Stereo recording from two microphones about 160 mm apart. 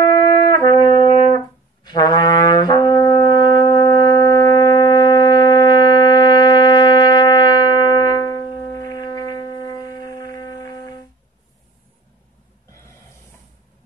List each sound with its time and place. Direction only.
0.0 s brass instrument: 25° left (ahead or behind)